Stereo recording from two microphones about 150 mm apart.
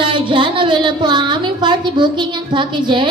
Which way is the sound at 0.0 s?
35° right (ahead or behind).